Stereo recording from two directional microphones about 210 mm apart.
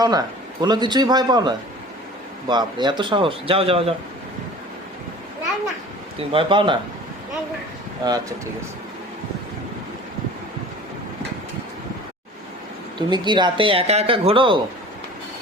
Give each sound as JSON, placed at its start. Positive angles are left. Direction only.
{"t": 0.0, "sound": "speech", "side_deg": -20}
{"t": 6.3, "sound": "speech", "side_deg": -25}
{"t": 8.0, "sound": "speech", "side_deg": -20}
{"t": 13.0, "sound": "speech", "side_deg": -20}